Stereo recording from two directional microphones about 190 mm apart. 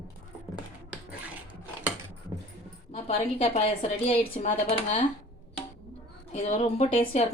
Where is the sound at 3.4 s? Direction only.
30° left (ahead or behind).